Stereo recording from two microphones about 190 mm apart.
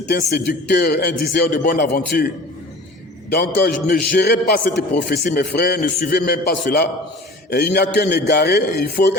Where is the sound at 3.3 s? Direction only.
60° left (ahead or behind).